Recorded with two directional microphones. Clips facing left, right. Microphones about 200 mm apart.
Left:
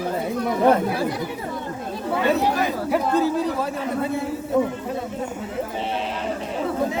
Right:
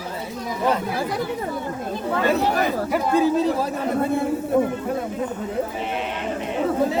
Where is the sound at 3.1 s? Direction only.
15° right (ahead or behind).